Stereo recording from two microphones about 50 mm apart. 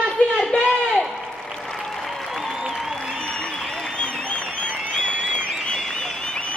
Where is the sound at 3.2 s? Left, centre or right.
Centre.